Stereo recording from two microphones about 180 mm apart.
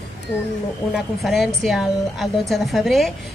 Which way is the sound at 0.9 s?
Centre (ahead or behind).